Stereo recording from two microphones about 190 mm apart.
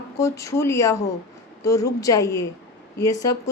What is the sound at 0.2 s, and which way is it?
A woman's voice, 15° left (ahead or behind).